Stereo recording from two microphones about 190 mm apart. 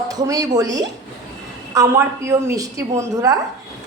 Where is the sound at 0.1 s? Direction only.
20° right (ahead or behind).